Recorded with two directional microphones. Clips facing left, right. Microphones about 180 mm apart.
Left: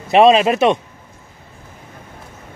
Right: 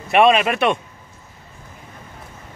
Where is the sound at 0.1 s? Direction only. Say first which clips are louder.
Left 4 dB; 30° left (ahead or behind).